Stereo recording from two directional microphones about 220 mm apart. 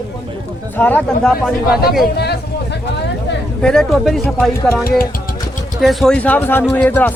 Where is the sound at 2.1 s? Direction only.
50° left (ahead or behind).